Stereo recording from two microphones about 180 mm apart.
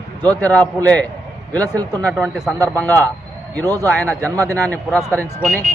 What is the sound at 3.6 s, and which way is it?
Speech, 20° right (ahead or behind).